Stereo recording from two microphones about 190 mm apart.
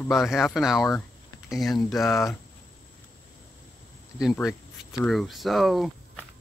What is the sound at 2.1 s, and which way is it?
Speech, 15° left (ahead or behind).